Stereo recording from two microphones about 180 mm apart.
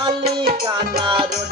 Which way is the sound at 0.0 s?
25° right (ahead or behind).